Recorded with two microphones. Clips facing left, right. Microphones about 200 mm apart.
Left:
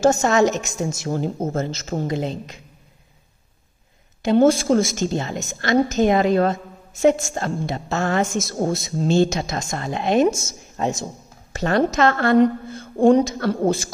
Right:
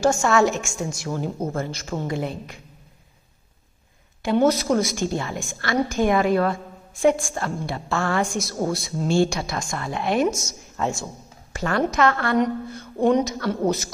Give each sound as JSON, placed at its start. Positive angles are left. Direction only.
{"t": 0.2, "sound": "a woman's voice", "side_deg": 20}
{"t": 4.2, "sound": "a woman's voice", "side_deg": 25}